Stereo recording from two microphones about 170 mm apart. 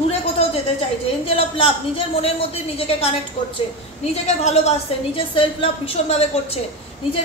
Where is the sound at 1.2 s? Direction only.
35° left (ahead or behind).